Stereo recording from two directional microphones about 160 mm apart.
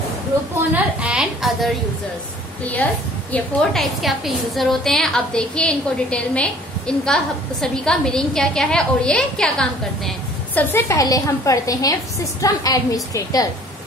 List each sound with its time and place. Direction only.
1.0 s a woman's voice: 5° right (ahead or behind)
2.6 s a woman's voice: 10° left (ahead or behind)